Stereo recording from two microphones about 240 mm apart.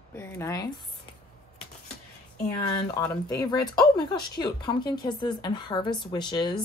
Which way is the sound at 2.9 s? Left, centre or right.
Centre.